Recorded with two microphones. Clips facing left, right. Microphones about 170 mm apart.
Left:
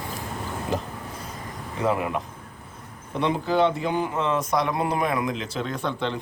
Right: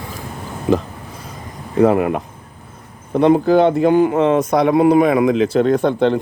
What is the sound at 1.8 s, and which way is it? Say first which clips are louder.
Speech: right 10 dB; 55° right (ahead or behind).